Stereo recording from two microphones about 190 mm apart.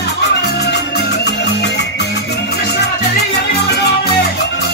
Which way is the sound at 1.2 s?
60° left (ahead or behind).